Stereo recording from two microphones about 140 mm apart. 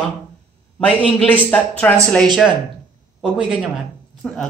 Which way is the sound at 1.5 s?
10° left (ahead or behind).